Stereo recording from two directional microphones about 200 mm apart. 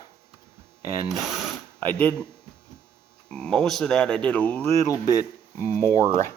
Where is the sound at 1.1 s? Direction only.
Centre (ahead or behind).